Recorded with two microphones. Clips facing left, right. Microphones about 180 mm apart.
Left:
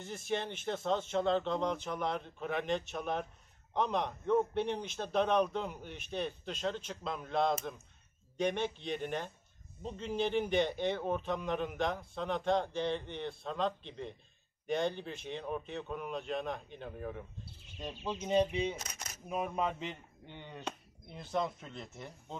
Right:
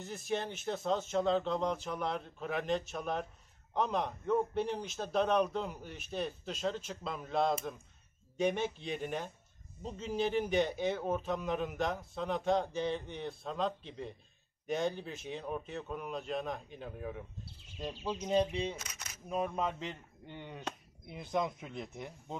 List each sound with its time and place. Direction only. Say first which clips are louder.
0.0 s a man's voice: even; 5° right (ahead or behind)
18.8 s speech: left 2 dB; 40° left (ahead or behind)
19.2 s a man's voice: even; 5° left (ahead or behind)
20.2 s speech: right 1 dB; 5° right (ahead or behind)